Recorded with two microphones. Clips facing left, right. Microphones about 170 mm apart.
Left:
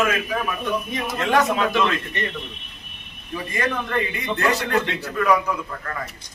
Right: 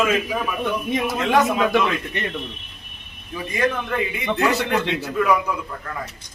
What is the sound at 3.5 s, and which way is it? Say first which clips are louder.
Speech: right 2 dB; 5° right (ahead or behind).